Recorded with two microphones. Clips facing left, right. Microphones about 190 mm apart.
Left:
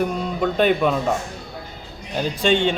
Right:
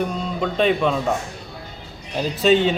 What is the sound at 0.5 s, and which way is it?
Speech, 5° left (ahead or behind).